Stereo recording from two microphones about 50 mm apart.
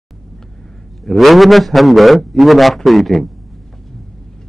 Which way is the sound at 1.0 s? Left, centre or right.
Centre.